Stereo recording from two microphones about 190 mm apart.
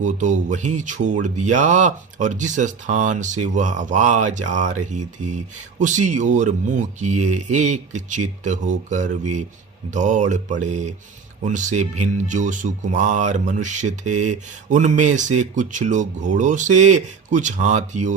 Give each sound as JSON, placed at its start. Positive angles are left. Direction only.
{"t": 0.0, "sound": "speech", "side_deg": -40}